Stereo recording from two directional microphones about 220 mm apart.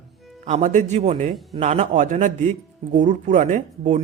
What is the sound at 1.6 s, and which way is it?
Speech, 30° right (ahead or behind).